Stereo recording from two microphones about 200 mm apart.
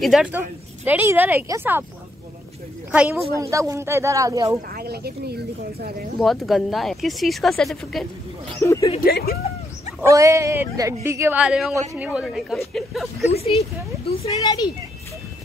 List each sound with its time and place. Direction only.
0.0 s a woman's voice: 5° right (ahead or behind)
2.9 s a woman's voice: 5° right (ahead or behind)
4.7 s speech: 50° right (ahead or behind)
6.1 s speech: centre (ahead or behind)
8.5 s speech: 15° left (ahead or behind)
9.0 s speech: 50° left (ahead or behind)
10.0 s a woman's voice: 15° right (ahead or behind)
13.2 s speech: 30° left (ahead or behind)